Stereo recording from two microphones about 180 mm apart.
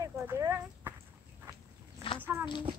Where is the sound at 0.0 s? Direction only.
15° right (ahead or behind).